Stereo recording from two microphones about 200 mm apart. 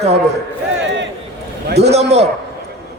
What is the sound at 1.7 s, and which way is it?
Speech, 55° right (ahead or behind).